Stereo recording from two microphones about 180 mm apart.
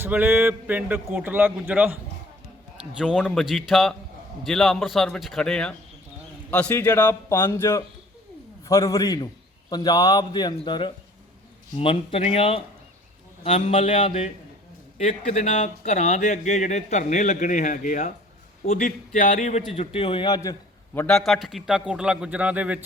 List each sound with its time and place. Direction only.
0.0 s speech: 10° right (ahead or behind)
3.0 s a man's voice: centre (ahead or behind); by 21.1 s 15° left (ahead or behind)
21.1 s a man's voice: centre (ahead or behind)